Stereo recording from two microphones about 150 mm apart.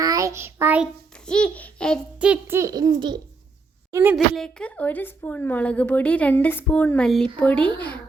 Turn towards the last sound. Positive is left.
turn(degrees=10)  # may be behind; listen again after turning